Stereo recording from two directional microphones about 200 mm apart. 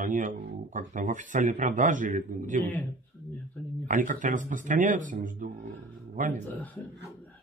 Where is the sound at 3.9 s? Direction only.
40° right (ahead or behind).